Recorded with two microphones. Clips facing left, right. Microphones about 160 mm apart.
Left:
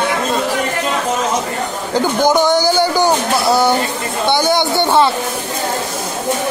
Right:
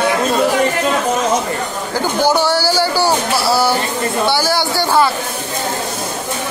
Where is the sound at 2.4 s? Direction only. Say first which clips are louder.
Left 2 dB; 20° left (ahead or behind).